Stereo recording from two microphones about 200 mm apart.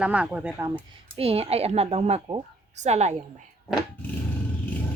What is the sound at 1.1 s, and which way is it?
A woman's voice, 30° right (ahead or behind).